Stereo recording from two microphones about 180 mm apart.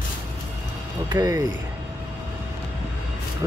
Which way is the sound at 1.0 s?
20° right (ahead or behind).